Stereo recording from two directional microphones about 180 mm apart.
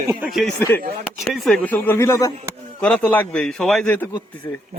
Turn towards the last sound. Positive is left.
turn(degrees=10)  # may be behind; listen again after turning